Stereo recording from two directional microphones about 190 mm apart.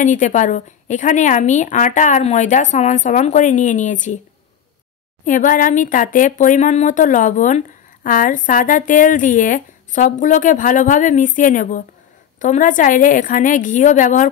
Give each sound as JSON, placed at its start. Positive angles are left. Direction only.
{"t": 0.0, "sound": "a woman's voice", "side_deg": 40}
{"t": 5.2, "sound": "speech", "side_deg": 45}